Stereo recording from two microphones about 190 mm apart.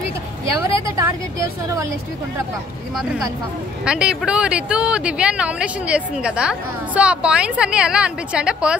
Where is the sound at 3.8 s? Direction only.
5° right (ahead or behind).